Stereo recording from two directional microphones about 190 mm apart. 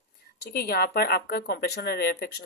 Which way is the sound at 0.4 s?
55° left (ahead or behind).